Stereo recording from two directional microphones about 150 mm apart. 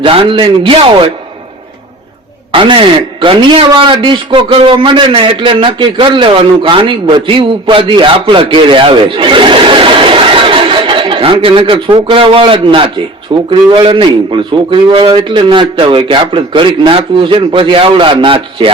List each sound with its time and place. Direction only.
0.0 s a man's voice: 35° right (ahead or behind)
2.5 s a man's voice: 35° right (ahead or behind)